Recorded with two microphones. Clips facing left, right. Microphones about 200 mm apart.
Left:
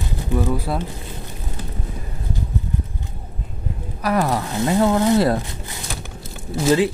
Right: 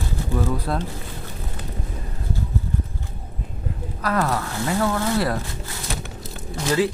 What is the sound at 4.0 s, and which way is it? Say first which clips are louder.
Speech: left 3 dB; 15° left (ahead or behind).